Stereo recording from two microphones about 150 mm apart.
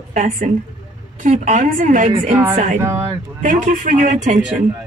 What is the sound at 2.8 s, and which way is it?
Speech, 15° right (ahead or behind).